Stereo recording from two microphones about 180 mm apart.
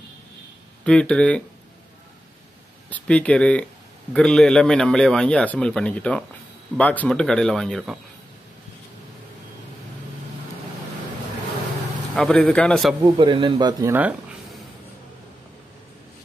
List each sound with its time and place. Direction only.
0.8 s speech: 5° left (ahead or behind)
2.9 s a man's voice: 5° left (ahead or behind)
12.2 s a man's voice: 5° left (ahead or behind)
13.0 s speech: 25° right (ahead or behind)
13.9 s a sound: 10° right (ahead or behind)